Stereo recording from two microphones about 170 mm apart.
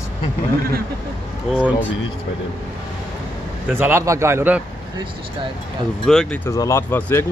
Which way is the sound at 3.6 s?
15° right (ahead or behind).